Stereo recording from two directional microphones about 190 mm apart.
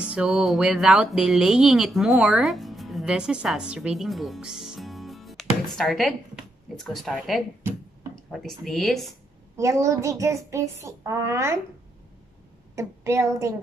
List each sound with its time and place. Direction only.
0.0 s speech: 5° right (ahead or behind)
9.6 s a child's voice: 15° right (ahead or behind)
12.7 s a child's voice: 15° right (ahead or behind)